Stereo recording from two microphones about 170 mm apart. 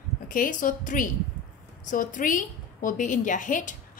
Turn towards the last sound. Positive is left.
turn(degrees=50)  # may be behind; listen again after turning